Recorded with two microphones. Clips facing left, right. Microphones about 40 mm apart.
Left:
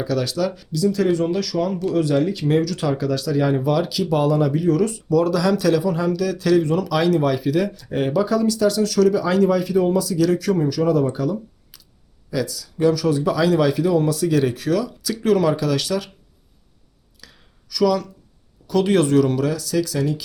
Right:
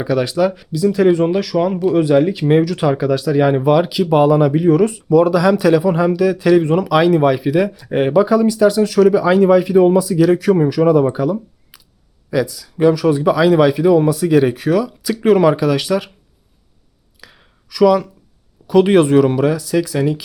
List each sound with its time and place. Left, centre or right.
0.0 s speech: right
17.2 s a sound: right
18.7 s speech: right